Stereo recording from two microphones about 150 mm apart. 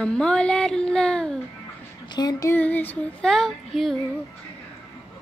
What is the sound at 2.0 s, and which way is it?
Speech, 25° left (ahead or behind).